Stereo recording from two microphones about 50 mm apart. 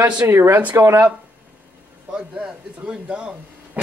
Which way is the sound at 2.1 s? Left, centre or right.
Centre.